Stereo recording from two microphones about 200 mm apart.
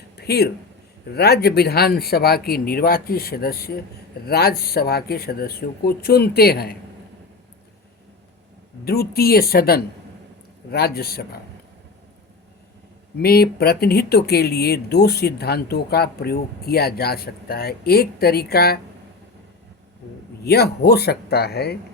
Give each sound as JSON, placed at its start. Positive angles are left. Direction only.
{"t": 0.2, "sound": "speech", "side_deg": 55}
{"t": 8.8, "sound": "speech", "side_deg": 50}
{"t": 13.1, "sound": "speech", "side_deg": 50}
{"t": 20.4, "sound": "speech", "side_deg": 55}